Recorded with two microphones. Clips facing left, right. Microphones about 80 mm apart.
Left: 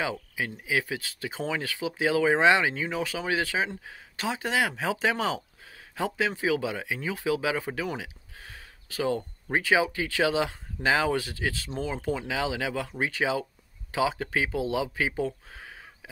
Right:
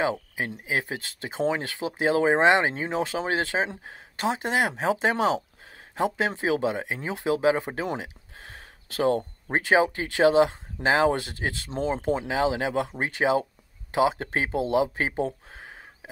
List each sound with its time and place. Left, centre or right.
0.4 s speech: right
8.4 s a sound: right
9.0 s speech: right
9.7 s speech: right
14.2 s speech: right